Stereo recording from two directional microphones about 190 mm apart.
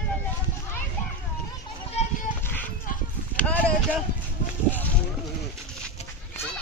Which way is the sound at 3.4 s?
5° left (ahead or behind).